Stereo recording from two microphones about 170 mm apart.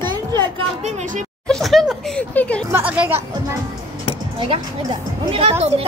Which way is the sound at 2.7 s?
10° right (ahead or behind).